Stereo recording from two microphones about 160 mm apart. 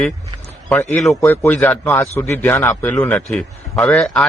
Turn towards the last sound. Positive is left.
turn(degrees=5)  # may be behind; listen again after turning